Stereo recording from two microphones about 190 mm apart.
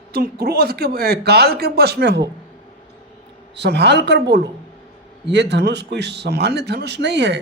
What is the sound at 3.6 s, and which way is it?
Speech, 60° right (ahead or behind).